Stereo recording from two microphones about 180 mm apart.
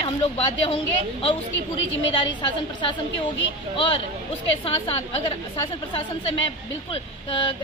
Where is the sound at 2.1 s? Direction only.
25° left (ahead or behind).